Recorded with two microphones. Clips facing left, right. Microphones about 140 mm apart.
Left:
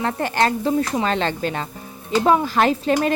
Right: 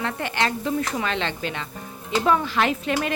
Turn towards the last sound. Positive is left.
turn(degrees=35)  # may be behind; listen again after turning